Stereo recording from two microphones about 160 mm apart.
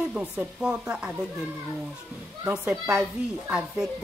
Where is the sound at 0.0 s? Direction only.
5° right (ahead or behind).